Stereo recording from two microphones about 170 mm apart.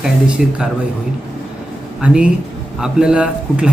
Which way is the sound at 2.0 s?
5° right (ahead or behind).